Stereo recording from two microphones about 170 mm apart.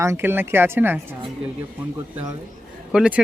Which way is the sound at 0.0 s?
15° right (ahead or behind).